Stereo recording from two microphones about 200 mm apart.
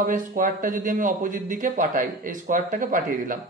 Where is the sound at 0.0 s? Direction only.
40° right (ahead or behind).